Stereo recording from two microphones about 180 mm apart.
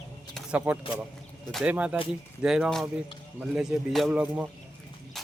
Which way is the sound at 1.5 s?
5° right (ahead or behind).